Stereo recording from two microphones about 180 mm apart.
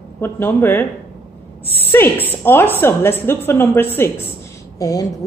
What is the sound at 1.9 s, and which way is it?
Speech, 10° left (ahead or behind).